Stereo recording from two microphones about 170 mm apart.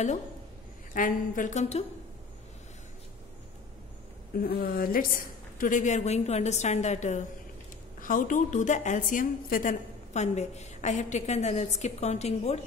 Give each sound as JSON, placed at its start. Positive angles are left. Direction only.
{"t": 0.9, "sound": "a woman's voice", "side_deg": 50}
{"t": 4.4, "sound": "a woman's voice", "side_deg": 60}